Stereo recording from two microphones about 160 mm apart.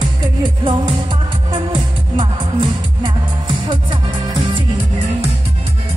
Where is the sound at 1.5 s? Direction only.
30° right (ahead or behind).